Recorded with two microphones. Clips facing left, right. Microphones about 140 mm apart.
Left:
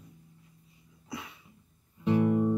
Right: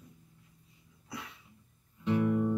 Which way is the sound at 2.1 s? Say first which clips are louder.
Left 3 dB; 30° left (ahead or behind).